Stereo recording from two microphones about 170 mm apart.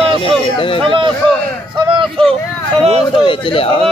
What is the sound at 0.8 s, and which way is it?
Speech, 30° right (ahead or behind).